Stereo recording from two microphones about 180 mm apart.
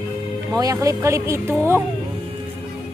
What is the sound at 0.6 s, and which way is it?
Speech, 20° right (ahead or behind).